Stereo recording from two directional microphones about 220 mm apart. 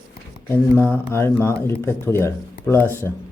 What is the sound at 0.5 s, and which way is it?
Speech, 10° left (ahead or behind).